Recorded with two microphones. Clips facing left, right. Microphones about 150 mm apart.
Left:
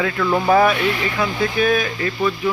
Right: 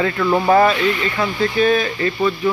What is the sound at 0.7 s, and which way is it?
Speech, 10° left (ahead or behind).